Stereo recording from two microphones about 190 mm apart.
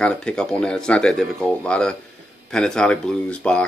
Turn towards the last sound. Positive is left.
turn(degrees=5)  # may be behind; listen again after turning